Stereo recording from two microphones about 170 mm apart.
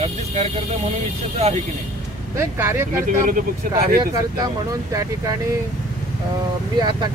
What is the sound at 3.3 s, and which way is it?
Speech, 55° right (ahead or behind).